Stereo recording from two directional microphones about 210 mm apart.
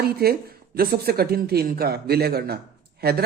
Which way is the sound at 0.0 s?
45° right (ahead or behind).